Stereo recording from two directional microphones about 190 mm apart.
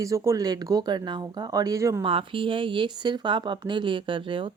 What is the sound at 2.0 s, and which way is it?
Speech, 25° right (ahead or behind).